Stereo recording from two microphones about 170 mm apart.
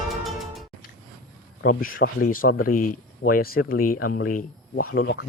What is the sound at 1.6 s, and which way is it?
Speech, 55° left (ahead or behind).